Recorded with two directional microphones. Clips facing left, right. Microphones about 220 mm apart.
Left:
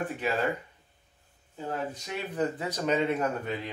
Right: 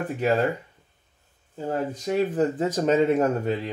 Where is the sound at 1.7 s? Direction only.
40° right (ahead or behind).